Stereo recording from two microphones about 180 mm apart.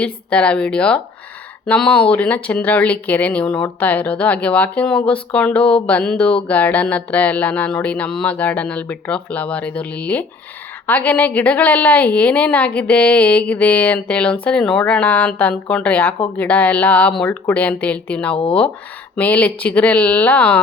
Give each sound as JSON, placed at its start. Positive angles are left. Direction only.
{"t": 0.0, "sound": "speech", "side_deg": 5}